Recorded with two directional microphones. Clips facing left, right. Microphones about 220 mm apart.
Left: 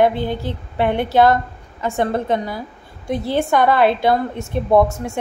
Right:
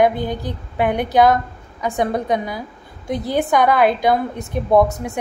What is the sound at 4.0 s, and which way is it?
Speech, 15° right (ahead or behind).